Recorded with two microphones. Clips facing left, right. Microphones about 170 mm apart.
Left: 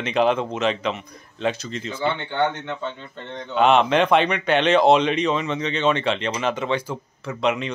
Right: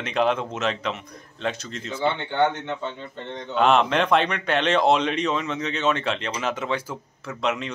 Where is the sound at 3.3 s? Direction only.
Centre (ahead or behind).